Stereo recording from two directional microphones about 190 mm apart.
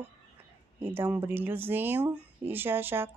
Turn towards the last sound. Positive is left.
turn(degrees=-10)  # may be behind; listen again after turning